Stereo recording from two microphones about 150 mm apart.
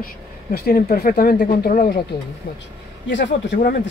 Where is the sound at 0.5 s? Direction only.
90° left; by 1.9 s 75° left (ahead or behind).